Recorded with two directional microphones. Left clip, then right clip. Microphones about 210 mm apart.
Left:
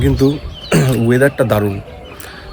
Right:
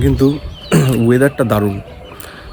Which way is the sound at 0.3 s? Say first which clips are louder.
Even; 15° right (ahead or behind).